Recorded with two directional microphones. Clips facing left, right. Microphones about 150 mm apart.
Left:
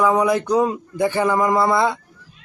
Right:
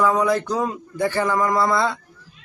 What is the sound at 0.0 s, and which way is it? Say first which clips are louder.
Speech: left 2 dB; 15° left (ahead or behind).